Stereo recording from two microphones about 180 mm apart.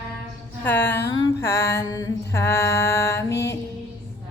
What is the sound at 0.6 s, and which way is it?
Mantra, 10° left (ahead or behind).